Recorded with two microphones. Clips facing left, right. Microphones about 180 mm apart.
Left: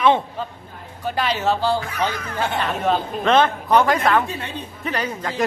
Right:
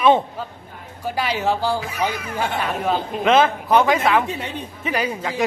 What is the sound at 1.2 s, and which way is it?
A man's voice, 10° right (ahead or behind).